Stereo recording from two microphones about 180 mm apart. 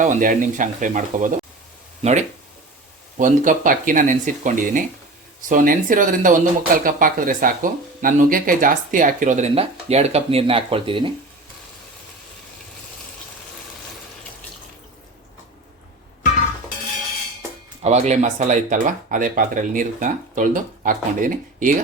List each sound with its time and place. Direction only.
0.0 s speech: 45° right (ahead or behind)
3.2 s speech: 45° right (ahead or behind); by 11.1 s 30° right (ahead or behind)
17.8 s speech: 40° right (ahead or behind)